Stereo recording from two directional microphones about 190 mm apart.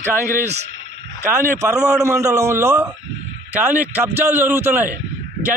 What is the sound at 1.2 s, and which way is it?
A man's voice, 10° right (ahead or behind).